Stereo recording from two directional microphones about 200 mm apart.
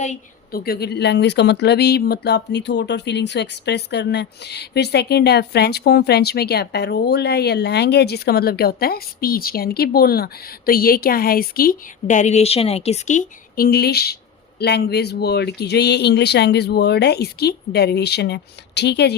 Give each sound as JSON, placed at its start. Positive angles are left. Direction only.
{"t": 0.0, "sound": "a woman's voice", "side_deg": 40}
{"t": 13.7, "sound": "a woman's voice", "side_deg": 50}